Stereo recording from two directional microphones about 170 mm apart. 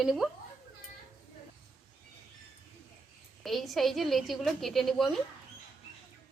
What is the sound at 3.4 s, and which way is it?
A woman's voice, centre (ahead or behind).